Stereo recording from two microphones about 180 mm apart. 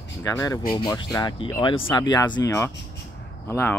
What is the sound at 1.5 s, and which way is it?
Speech, 30° left (ahead or behind).